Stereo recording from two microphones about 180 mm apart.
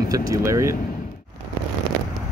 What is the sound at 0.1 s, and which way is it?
Speech, 15° right (ahead or behind).